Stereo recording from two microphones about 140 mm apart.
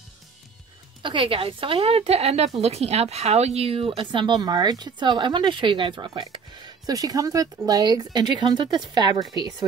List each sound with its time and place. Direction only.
1.0 s a woman's voice: 40° right (ahead or behind)